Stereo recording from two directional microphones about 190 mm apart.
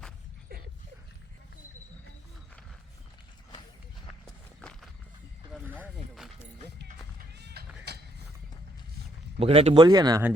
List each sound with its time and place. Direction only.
5.8 s a sound: centre (ahead or behind)
7.3 s horse: 60° right (ahead or behind)
9.4 s speech: 30° right (ahead or behind)